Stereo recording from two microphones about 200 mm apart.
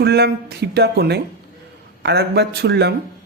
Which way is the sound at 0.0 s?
55° right (ahead or behind).